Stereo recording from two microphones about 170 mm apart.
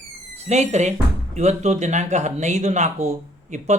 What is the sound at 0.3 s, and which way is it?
Speech, 40° right (ahead or behind).